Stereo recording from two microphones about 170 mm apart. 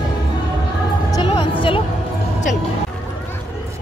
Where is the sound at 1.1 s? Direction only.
30° left (ahead or behind).